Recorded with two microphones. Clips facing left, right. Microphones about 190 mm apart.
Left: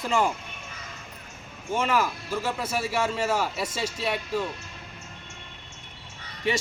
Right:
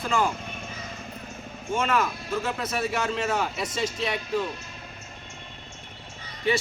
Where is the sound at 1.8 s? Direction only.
5° left (ahead or behind).